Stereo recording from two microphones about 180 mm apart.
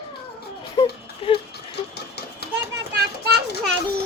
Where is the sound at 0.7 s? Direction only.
25° left (ahead or behind).